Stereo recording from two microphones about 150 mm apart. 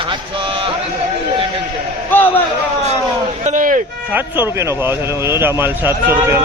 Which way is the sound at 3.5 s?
60° right (ahead or behind).